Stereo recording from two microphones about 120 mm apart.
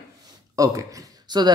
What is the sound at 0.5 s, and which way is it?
Speech, 30° right (ahead or behind).